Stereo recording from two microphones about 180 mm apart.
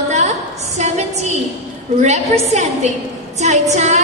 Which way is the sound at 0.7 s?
40° right (ahead or behind).